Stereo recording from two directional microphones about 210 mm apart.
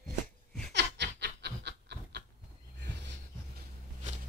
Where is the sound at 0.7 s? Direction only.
55° right (ahead or behind).